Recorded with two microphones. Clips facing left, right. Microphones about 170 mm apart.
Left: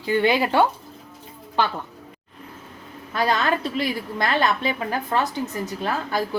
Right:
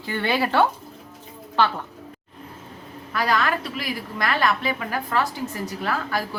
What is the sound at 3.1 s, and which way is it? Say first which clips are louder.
A woman's voice: left 1 dB; 25° left (ahead or behind).